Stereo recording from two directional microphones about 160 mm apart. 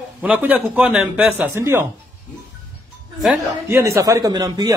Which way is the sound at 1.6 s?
15° right (ahead or behind).